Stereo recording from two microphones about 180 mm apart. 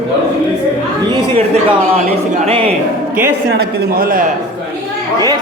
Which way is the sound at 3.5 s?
60° right (ahead or behind).